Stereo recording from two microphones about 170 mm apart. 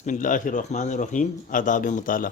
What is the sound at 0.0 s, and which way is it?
A man's voice, 50° left (ahead or behind).